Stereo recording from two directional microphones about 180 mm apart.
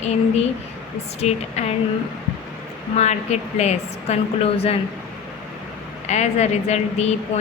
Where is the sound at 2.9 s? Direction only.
40° left (ahead or behind).